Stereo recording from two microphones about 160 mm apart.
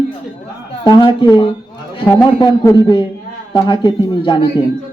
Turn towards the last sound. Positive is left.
turn(degrees=30)  # may be behind; listen again after turning